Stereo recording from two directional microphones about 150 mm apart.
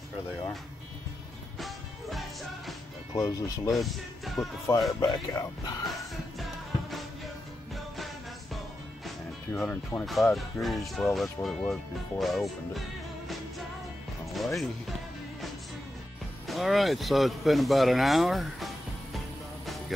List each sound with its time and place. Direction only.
1.6 s music: centre (ahead or behind)
3.2 s speech: 25° left (ahead or behind)
3.7 s speech: centre (ahead or behind)
5.1 s speech: 25° left (ahead or behind)
5.9 s music: centre (ahead or behind)
9.5 s speech: 10° left (ahead or behind)
10.0 s speech: centre (ahead or behind)
14.3 s speech: centre (ahead or behind)
16.4 s speech: centre (ahead or behind)
19.1 s music: centre (ahead or behind)